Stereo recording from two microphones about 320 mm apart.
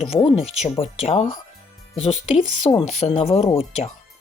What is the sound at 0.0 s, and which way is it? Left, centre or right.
Speech, centre.